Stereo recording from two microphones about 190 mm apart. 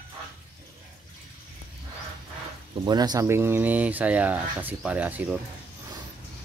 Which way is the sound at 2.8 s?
20° right (ahead or behind).